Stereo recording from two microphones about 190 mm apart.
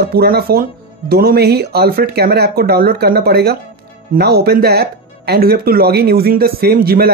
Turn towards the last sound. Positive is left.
turn(degrees=-50)  # may be behind; listen again after turning